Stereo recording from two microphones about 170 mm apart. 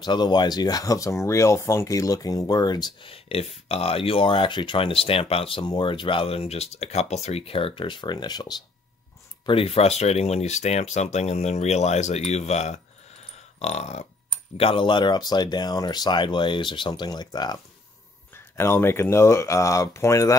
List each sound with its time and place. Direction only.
0.0 s speech: 25° left (ahead or behind)
9.5 s speech: 35° left (ahead or behind); by 20.3 s 15° left (ahead or behind)